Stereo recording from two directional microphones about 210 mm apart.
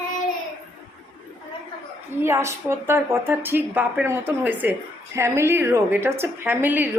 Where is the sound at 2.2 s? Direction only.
10° right (ahead or behind).